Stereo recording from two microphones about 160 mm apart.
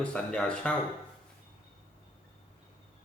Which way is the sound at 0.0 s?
5° left (ahead or behind).